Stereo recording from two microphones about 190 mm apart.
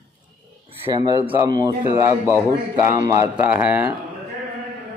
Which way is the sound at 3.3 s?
10° right (ahead or behind).